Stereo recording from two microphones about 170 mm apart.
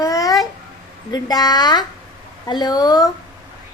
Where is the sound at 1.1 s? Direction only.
25° left (ahead or behind).